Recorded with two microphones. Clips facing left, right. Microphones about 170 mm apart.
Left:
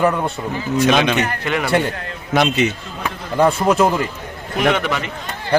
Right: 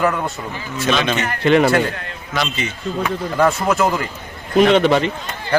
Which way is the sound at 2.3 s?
60° left (ahead or behind).